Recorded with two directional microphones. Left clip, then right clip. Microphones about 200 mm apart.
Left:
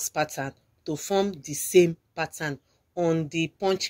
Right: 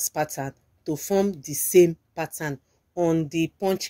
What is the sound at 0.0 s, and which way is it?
A woman's voice, 35° right (ahead or behind).